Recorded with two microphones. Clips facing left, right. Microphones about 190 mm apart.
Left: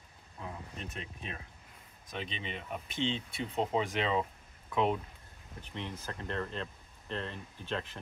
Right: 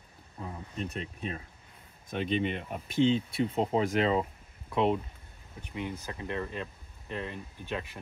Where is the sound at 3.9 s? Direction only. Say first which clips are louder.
Right 6 dB; 40° right (ahead or behind).